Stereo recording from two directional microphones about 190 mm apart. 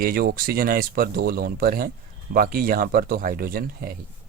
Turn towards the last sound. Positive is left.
turn(degrees=-50)  # may be behind; listen again after turning